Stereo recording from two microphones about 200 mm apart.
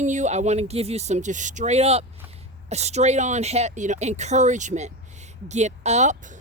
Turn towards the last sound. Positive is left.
turn(degrees=-35)  # may be behind; listen again after turning